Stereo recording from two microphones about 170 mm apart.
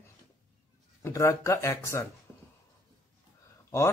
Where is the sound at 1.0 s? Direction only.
15° left (ahead or behind).